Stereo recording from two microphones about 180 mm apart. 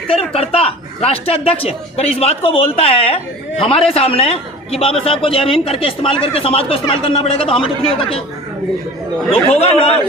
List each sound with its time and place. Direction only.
0.1 s a man's voice: 35° left (ahead or behind)
9.3 s a man's voice: 35° left (ahead or behind)